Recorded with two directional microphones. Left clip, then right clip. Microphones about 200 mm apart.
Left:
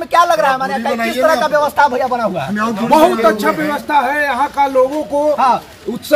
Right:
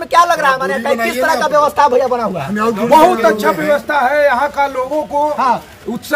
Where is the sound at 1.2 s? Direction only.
35° right (ahead or behind).